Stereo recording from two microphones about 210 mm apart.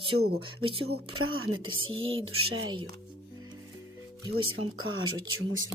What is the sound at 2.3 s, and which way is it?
Speech, 90° right.